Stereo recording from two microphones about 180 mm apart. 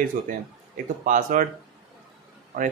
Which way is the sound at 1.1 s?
50° right (ahead or behind).